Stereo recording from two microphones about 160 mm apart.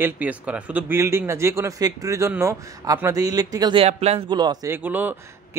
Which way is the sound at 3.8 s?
40° right (ahead or behind).